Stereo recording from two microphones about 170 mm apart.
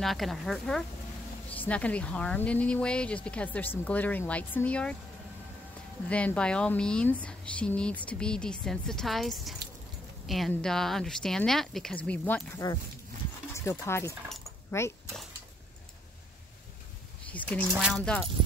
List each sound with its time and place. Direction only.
0.0 s speech: centre (ahead or behind)
6.0 s speech: 5° left (ahead or behind)
17.3 s speech: 10° left (ahead or behind)